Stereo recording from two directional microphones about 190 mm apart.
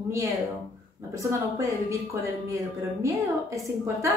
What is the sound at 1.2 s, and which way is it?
Speech, 15° right (ahead or behind).